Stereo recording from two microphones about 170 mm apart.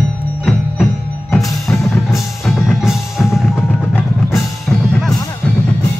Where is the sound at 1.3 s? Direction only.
Centre (ahead or behind).